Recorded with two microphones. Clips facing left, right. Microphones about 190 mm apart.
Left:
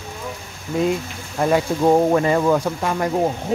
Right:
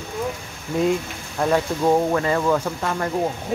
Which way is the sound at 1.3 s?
10° left (ahead or behind).